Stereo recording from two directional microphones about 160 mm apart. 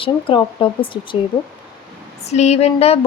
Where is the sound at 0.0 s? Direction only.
35° left (ahead or behind).